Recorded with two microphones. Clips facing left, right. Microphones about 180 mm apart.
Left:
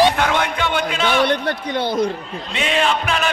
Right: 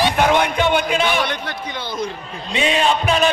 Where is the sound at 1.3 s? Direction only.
55° left (ahead or behind).